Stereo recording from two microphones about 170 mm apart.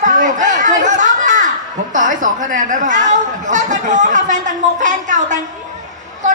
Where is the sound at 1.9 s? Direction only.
50° right (ahead or behind).